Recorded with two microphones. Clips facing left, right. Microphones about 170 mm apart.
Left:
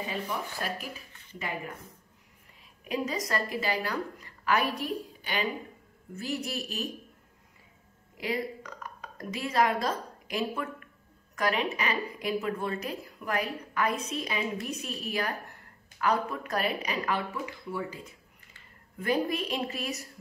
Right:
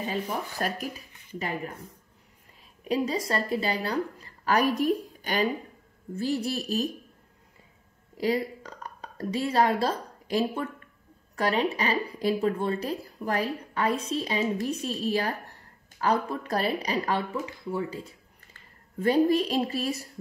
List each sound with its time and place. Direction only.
0.0 s speech: 40° right (ahead or behind)
2.8 s a woman's voice: 30° right (ahead or behind)
6.1 s a woman's voice: 30° right (ahead or behind)
8.2 s a woman's voice: 35° right (ahead or behind)